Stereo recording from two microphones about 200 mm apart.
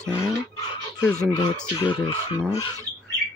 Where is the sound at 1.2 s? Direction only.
20° left (ahead or behind).